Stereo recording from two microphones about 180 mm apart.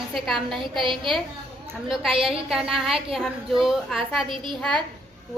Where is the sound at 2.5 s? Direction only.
Centre (ahead or behind).